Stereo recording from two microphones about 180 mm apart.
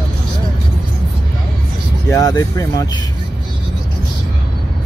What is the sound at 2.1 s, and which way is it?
Speech, 20° left (ahead or behind).